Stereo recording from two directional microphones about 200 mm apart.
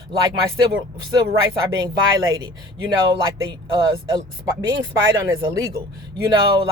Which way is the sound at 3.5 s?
20° right (ahead or behind).